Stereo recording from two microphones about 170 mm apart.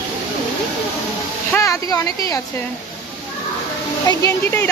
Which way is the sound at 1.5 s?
20° left (ahead or behind).